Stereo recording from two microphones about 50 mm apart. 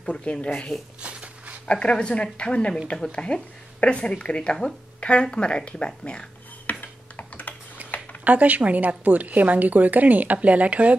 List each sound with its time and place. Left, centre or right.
0.0 s speech: left
0.7 s speech: centre
1.0 s a sound: right
1.7 s speech: left
6.7 s computer keyboard: left
7.8 s a sound: right
8.2 s a woman's voice: right